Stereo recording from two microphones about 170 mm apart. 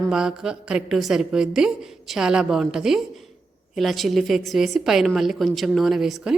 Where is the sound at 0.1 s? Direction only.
5° right (ahead or behind).